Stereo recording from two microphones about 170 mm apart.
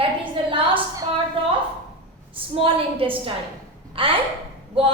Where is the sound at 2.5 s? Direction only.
30° right (ahead or behind).